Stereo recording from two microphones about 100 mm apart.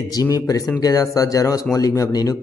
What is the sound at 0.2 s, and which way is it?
Speech, 35° left (ahead or behind).